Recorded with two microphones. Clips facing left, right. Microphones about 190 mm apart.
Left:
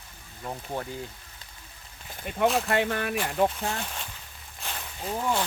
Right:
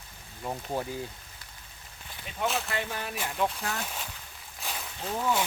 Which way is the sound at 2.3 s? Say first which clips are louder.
Left 7 dB; 55° left (ahead or behind).